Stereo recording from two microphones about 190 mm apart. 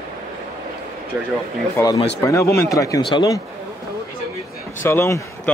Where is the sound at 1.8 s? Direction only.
15° left (ahead or behind).